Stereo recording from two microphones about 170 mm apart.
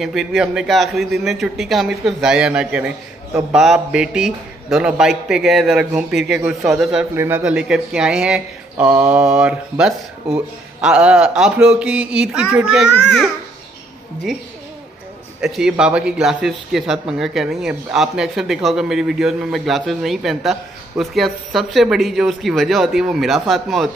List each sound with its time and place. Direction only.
0.0 s speech: centre (ahead or behind)
15.4 s speech: centre (ahead or behind)